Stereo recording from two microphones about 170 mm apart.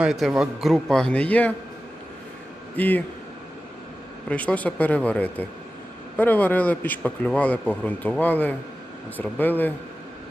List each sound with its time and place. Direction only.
0.0 s a man's voice: 5° right (ahead or behind)
2.7 s a man's voice: 10° left (ahead or behind)
4.3 s a man's voice: 10° left (ahead or behind)